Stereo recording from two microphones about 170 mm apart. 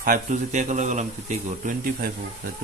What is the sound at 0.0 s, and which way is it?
Speech, 45° right (ahead or behind).